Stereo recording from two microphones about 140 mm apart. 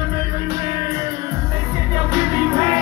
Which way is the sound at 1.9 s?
25° right (ahead or behind).